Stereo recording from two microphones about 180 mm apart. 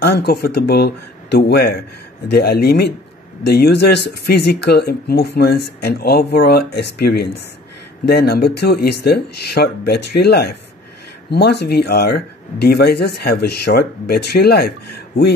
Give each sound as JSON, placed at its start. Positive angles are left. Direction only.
{"t": 0.0, "sound": "speech", "side_deg": 65}